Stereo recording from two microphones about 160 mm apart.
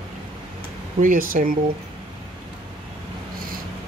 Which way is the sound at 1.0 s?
60° right (ahead or behind).